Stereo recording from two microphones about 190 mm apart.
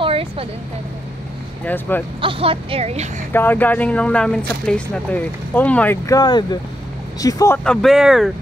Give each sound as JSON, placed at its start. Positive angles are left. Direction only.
{"t": 0.0, "sound": "a sound", "side_deg": -30}
{"t": 1.6, "sound": "speech", "side_deg": 10}
{"t": 2.2, "sound": "speech", "side_deg": -30}
{"t": 3.3, "sound": "speech", "side_deg": 10}
{"t": 7.6, "sound": "speech", "side_deg": 0}